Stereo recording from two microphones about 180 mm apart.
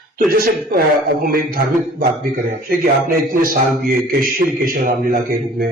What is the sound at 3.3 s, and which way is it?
A man's voice, 55° right (ahead or behind).